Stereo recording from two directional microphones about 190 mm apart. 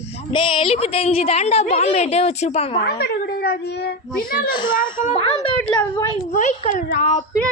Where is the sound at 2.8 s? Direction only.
60° left (ahead or behind).